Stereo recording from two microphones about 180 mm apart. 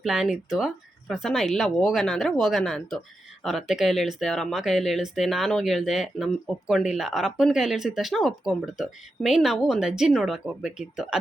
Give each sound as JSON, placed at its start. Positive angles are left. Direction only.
{"t": 0.0, "sound": "speech", "side_deg": 0}